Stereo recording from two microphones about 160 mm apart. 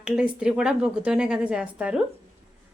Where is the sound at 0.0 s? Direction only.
5° right (ahead or behind).